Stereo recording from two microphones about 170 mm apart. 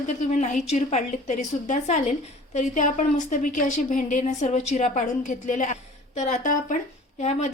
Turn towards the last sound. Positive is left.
turn(degrees=40)  # may be behind; listen again after turning